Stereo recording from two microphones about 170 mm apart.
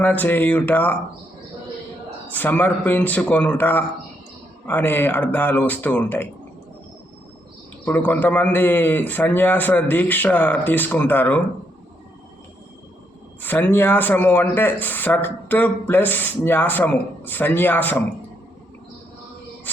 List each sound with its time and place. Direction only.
0.0 s speech: 10° left (ahead or behind)
2.3 s speech: 10° left (ahead or behind)
7.9 s speech: 10° left (ahead or behind)
13.4 s speech: 10° left (ahead or behind)